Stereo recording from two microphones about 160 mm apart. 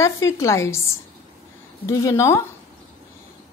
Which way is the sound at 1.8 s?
20° left (ahead or behind).